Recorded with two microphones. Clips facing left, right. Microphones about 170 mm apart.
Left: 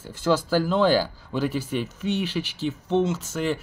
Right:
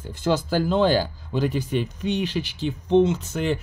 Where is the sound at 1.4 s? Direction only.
5° left (ahead or behind).